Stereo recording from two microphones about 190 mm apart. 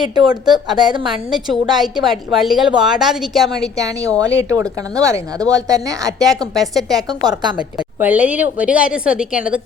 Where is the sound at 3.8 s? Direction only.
15° right (ahead or behind).